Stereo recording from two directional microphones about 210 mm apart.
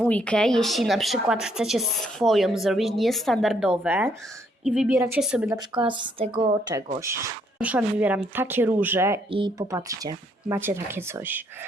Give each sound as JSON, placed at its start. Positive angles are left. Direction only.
{"t": 0.0, "sound": "a woman's voice", "side_deg": 5}
{"t": 5.7, "sound": "a woman's voice", "side_deg": -25}
{"t": 7.6, "sound": "speech", "side_deg": -5}